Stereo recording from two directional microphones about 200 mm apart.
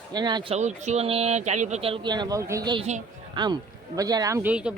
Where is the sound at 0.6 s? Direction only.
35° right (ahead or behind).